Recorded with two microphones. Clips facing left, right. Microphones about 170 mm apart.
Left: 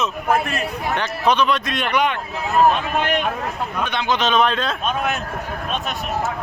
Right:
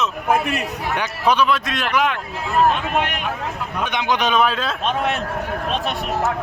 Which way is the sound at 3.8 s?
15° right (ahead or behind).